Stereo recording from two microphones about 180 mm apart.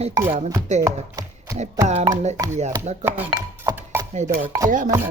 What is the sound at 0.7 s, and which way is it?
Speech, 40° right (ahead or behind).